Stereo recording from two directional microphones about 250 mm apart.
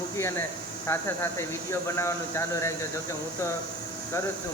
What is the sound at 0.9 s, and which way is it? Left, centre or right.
Speech, centre.